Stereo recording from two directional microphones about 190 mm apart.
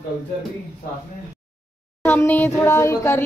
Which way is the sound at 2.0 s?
10° left (ahead or behind).